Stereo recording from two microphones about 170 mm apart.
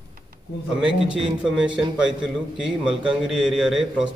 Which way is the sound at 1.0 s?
5° right (ahead or behind).